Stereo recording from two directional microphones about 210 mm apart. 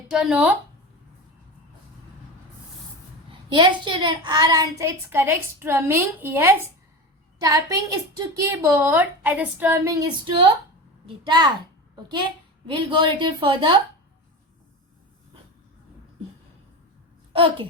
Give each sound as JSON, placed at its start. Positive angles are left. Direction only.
{"t": 0.1, "sound": "speech", "side_deg": -5}
{"t": 3.5, "sound": "a child's voice", "side_deg": -20}
{"t": 12.7, "sound": "a woman's voice", "side_deg": -25}
{"t": 17.3, "sound": "a woman's voice", "side_deg": -25}